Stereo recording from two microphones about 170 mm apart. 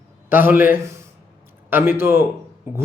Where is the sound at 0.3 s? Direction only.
10° right (ahead or behind).